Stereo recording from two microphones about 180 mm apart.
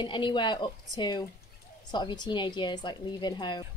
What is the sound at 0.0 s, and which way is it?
A woman's voice, 25° left (ahead or behind).